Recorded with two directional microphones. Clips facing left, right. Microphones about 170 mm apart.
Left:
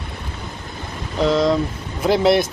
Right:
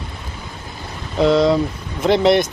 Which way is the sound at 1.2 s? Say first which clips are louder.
Right 3 dB; centre (ahead or behind).